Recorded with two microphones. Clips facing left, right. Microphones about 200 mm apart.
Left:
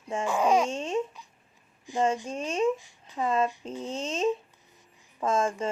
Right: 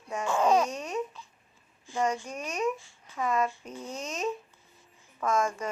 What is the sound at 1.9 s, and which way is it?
Speech, 15° left (ahead or behind).